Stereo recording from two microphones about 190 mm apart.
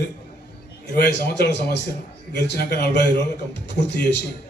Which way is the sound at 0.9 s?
60° left (ahead or behind).